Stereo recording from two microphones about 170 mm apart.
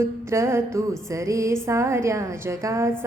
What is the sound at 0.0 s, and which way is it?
A woman's voice, 15° right (ahead or behind).